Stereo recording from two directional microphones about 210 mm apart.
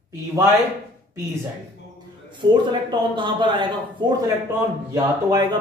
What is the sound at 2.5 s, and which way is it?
A man's voice, 20° right (ahead or behind).